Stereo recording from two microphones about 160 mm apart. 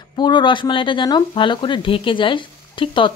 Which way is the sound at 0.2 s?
30° left (ahead or behind).